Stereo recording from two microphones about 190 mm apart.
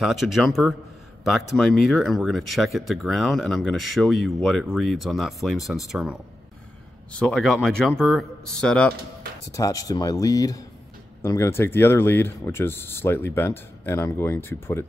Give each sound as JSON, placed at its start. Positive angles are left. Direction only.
{"t": 0.0, "sound": "speech", "side_deg": 0}
{"t": 9.5, "sound": "speech", "side_deg": 15}